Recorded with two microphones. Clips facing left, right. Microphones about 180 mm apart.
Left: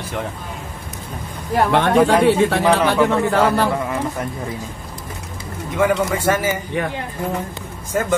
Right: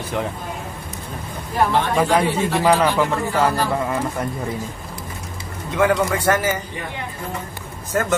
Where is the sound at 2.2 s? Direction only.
70° left (ahead or behind).